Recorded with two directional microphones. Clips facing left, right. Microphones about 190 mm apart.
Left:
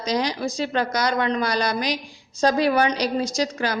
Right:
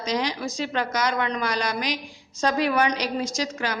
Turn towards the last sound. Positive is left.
turn(degrees=35)  # may be behind; listen again after turning